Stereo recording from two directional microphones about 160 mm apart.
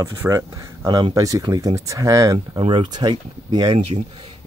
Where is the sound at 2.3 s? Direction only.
35° right (ahead or behind).